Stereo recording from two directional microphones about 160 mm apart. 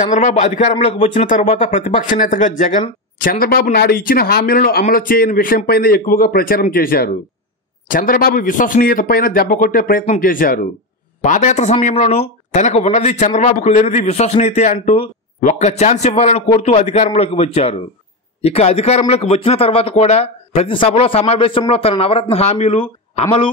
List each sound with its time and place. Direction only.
0.0 s a man's voice: 50° left (ahead or behind)
11.1 s a man's voice: 50° left (ahead or behind)